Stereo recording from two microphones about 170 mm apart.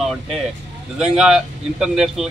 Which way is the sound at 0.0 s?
Centre (ahead or behind).